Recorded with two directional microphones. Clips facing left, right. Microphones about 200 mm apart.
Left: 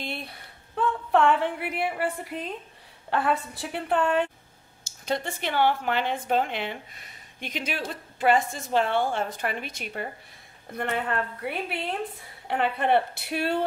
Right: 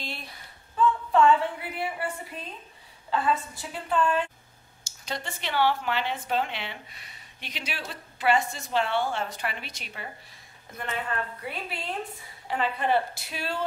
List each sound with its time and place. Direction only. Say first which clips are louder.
0.0 s a sound: left 4 dB; 60° left (ahead or behind)
2.3 s speech: left 7 dB; 20° left (ahead or behind)
3.1 s a woman's voice: left 1 dB; 65° left (ahead or behind)